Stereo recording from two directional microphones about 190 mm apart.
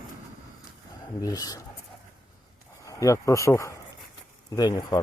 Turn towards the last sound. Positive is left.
turn(degrees=20)  # may be behind; listen again after turning